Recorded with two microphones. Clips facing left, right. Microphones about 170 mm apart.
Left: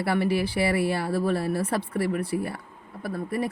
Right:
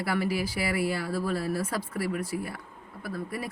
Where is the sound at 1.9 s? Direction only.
35° left (ahead or behind).